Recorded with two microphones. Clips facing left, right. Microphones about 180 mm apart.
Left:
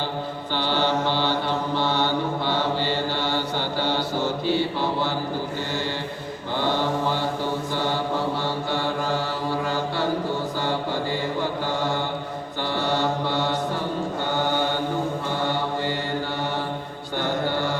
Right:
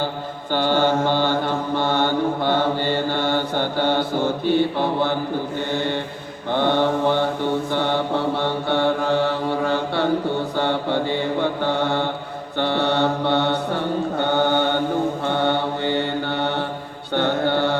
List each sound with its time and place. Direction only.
0.5 s mantra: 50° right (ahead or behind); by 17.7 s 65° right (ahead or behind)